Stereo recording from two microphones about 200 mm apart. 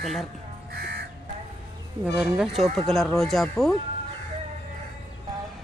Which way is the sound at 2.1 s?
Centre (ahead or behind).